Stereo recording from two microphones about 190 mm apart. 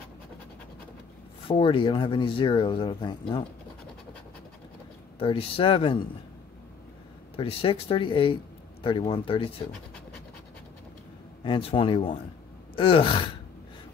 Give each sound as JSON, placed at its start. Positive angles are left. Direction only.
{"t": 1.5, "sound": "speech", "side_deg": 30}
{"t": 5.2, "sound": "speech", "side_deg": 30}
{"t": 7.3, "sound": "speech", "side_deg": 30}
{"t": 11.4, "sound": "speech", "side_deg": 25}